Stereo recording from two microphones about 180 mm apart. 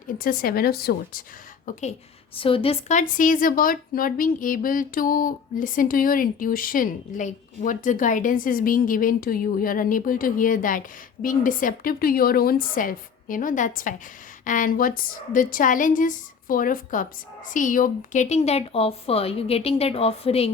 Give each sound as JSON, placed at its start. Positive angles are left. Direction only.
{"t": 0.2, "sound": "speech", "side_deg": 50}
{"t": 1.6, "sound": "a woman's voice", "side_deg": 40}
{"t": 3.0, "sound": "a woman's voice", "side_deg": 50}